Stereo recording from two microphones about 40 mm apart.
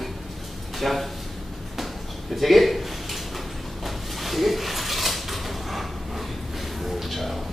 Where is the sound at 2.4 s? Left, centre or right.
Centre.